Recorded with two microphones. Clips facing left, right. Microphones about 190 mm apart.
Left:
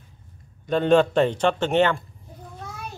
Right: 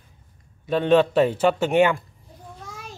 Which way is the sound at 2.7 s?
60° left (ahead or behind).